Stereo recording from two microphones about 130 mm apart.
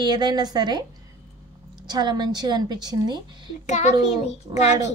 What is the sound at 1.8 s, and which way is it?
A woman's voice, 30° right (ahead or behind).